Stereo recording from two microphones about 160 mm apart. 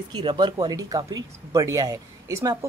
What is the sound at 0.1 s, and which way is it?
Speech, 30° right (ahead or behind).